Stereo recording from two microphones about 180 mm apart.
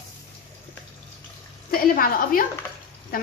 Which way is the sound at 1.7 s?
55° left (ahead or behind).